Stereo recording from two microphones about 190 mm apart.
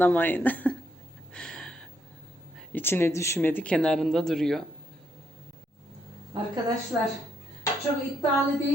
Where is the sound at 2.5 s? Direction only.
10° left (ahead or behind).